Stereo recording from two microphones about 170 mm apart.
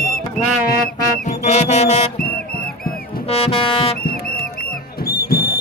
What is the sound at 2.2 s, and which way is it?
Music, 60° left (ahead or behind).